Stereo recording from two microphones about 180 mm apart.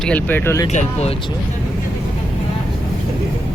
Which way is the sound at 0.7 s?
40° left (ahead or behind).